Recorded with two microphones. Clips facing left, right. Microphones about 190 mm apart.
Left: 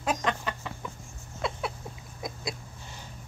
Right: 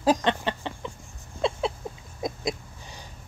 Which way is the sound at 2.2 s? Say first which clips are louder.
Right 7 dB; 20° right (ahead or behind).